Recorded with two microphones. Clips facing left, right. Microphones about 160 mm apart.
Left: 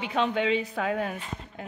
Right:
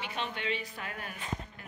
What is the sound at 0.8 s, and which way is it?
Speech, 90° left.